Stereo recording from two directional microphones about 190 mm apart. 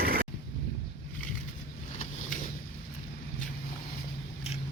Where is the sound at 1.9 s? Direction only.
35° left (ahead or behind).